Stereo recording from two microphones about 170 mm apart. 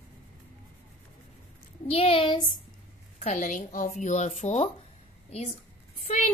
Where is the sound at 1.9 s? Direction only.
35° left (ahead or behind).